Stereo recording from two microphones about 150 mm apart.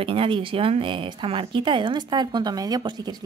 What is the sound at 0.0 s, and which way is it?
Speech, 35° right (ahead or behind).